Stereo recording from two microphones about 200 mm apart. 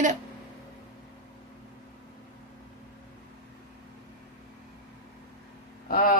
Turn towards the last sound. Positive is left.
turn(degrees=45)  # may be behind; listen again after turning